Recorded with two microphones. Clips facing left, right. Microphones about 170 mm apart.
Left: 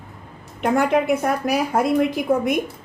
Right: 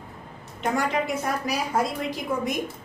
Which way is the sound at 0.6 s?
55° left (ahead or behind).